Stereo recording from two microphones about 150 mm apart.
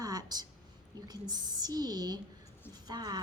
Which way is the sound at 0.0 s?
25° right (ahead or behind).